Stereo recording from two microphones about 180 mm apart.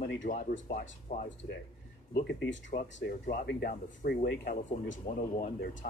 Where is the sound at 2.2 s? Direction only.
85° left.